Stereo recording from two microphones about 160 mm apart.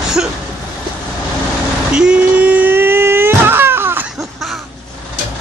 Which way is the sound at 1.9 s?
5° right (ahead or behind).